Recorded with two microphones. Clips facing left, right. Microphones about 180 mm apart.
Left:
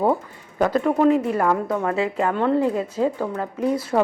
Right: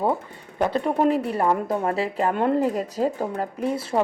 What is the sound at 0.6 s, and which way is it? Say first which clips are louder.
Speech: left 3 dB; 30° right (ahead or behind).